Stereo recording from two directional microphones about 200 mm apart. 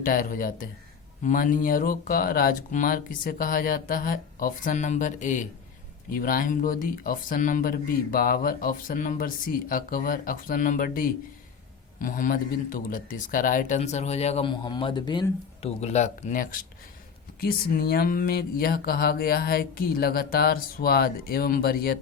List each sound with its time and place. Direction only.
0.0 s a man's voice: 45° left (ahead or behind)